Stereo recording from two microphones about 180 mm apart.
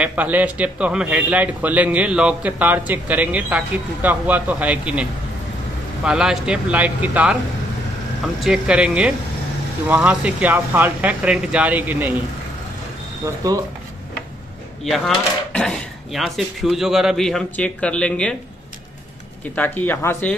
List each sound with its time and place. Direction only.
0.0 s a man's voice: 10° right (ahead or behind)
6.0 s speech: 5° right (ahead or behind)
8.5 s a man's voice: 5° right (ahead or behind)
13.2 s speech: 20° right (ahead or behind)
14.9 s speech: 5° left (ahead or behind)
19.5 s speech: 10° left (ahead or behind)